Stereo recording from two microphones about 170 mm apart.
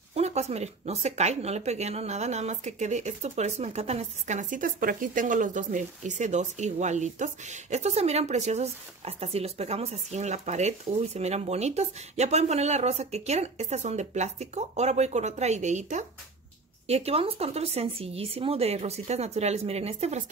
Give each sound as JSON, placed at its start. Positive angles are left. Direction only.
{"t": 0.1, "sound": "speech", "side_deg": -40}